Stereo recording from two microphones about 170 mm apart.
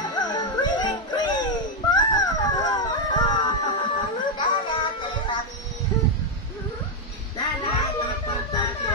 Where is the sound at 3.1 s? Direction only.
25° left (ahead or behind).